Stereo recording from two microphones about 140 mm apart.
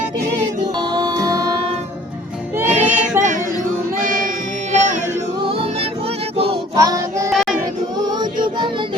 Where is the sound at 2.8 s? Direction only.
10° right (ahead or behind).